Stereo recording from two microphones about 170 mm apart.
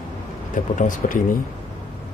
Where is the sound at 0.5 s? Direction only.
50° left (ahead or behind).